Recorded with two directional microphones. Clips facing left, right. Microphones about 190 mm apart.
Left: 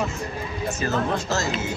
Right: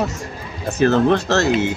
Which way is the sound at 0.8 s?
65° right (ahead or behind).